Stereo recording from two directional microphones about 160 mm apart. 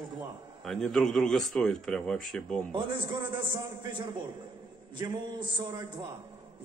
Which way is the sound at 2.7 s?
30° right (ahead or behind).